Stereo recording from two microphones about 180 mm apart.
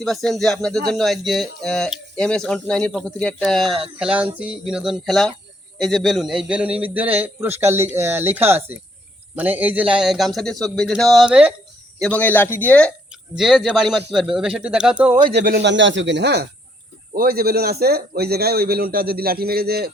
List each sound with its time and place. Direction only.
0.0 s a man's voice: centre (ahead or behind)
11.9 s speech: 5° left (ahead or behind)
15.5 s speech: 80° right
17.2 s a man's voice: 55° right (ahead or behind)